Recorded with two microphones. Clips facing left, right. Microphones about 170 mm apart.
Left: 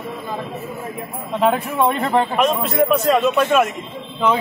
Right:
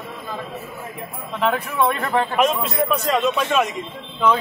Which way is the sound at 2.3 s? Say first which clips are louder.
Left 2 dB; centre (ahead or behind).